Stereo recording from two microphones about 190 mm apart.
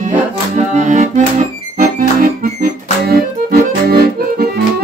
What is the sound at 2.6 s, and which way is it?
Accordion, 55° right (ahead or behind).